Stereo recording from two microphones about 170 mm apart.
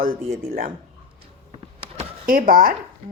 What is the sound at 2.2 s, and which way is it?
Speech, 55° right (ahead or behind).